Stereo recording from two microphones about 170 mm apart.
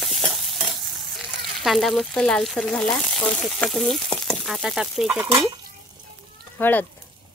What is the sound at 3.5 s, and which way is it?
Frying, centre (ahead or behind).